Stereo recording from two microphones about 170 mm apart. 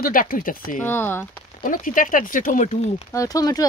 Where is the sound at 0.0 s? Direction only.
55° left (ahead or behind).